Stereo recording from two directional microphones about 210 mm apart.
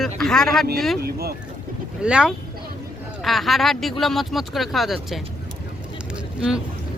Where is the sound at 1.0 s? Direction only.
45° right (ahead or behind).